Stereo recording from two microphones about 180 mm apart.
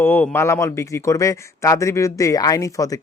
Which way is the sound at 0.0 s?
10° left (ahead or behind).